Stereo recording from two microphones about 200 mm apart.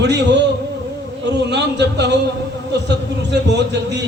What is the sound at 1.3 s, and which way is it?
A man's voice, 60° right (ahead or behind).